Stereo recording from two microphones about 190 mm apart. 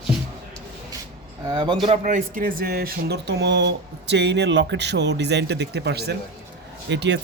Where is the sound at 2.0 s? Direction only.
45° right (ahead or behind).